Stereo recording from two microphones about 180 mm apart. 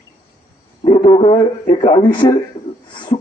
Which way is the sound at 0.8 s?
30° left (ahead or behind).